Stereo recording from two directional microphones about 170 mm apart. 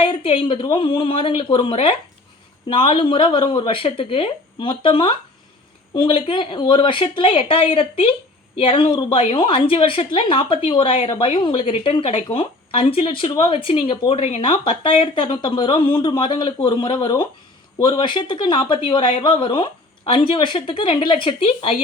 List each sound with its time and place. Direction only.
0.0 s a woman's voice: 35° left (ahead or behind)